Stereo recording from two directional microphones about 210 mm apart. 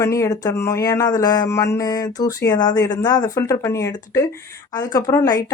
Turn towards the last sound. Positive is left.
turn(degrees=15)  # may be behind; listen again after turning